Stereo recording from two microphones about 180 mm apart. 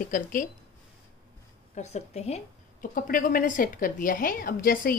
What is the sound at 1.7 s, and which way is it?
Speech, 40° left (ahead or behind).